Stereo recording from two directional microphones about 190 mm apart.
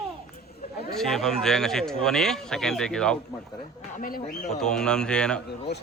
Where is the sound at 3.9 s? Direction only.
45° left (ahead or behind).